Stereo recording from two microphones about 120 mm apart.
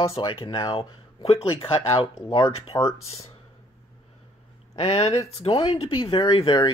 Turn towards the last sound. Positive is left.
turn(degrees=45)  # may be behind; listen again after turning